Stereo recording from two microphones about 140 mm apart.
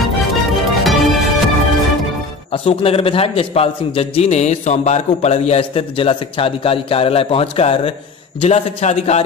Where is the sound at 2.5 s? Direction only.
45° left (ahead or behind).